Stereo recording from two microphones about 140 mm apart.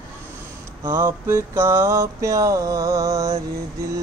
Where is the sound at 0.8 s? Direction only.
20° right (ahead or behind).